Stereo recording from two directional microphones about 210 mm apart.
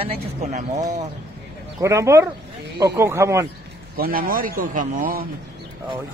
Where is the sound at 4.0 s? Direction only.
45° right (ahead or behind).